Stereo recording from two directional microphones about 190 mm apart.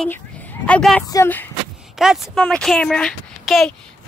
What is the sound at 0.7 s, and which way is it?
Speech, 5° left (ahead or behind).